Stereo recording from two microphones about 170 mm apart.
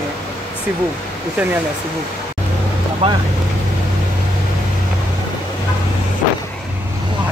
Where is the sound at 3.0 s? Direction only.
35° right (ahead or behind).